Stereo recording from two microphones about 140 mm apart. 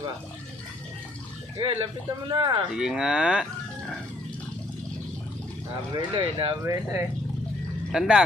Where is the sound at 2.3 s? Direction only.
35° right (ahead or behind).